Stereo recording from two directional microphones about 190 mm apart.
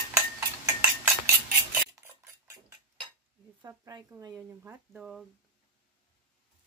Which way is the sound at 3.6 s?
20° right (ahead or behind).